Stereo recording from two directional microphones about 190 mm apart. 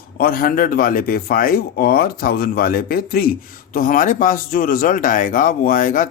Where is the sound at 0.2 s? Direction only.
50° left (ahead or behind).